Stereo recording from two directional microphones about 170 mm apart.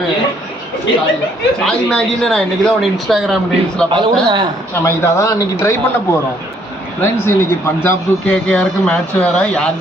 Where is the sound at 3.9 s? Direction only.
30° right (ahead or behind).